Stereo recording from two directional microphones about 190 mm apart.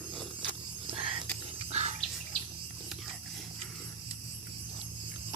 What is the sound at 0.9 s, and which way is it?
Whispering, 25° right (ahead or behind).